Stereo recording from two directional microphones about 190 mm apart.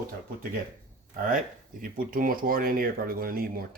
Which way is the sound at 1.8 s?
45° right (ahead or behind).